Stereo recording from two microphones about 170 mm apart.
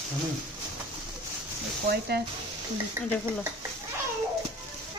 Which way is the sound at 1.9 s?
65° right (ahead or behind).